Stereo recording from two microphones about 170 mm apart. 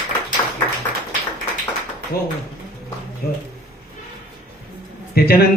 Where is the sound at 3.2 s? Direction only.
60° left (ahead or behind).